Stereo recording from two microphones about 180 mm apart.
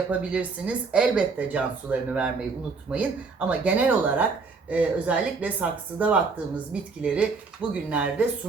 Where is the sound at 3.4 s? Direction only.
10° right (ahead or behind).